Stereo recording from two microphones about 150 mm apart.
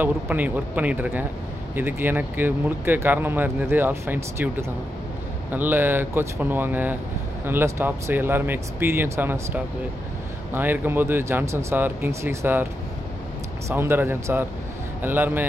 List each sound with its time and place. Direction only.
0.0 s speech: 10° right (ahead or behind)
13.7 s speech: 15° right (ahead or behind)